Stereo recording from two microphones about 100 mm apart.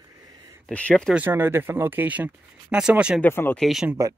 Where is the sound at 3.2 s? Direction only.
20° left (ahead or behind).